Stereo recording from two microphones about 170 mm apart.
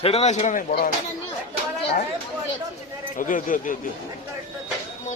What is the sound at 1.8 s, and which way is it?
Speech, 35° left (ahead or behind).